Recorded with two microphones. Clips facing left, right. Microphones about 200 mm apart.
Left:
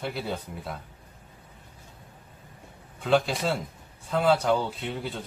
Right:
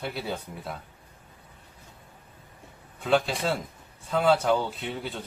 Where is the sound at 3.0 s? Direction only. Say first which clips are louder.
Left 1 dB; centre (ahead or behind).